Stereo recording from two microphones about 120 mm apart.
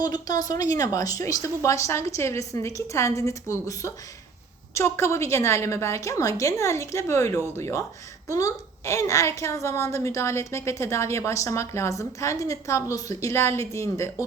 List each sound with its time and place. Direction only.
0.0 s a woman's voice: 35° left (ahead or behind)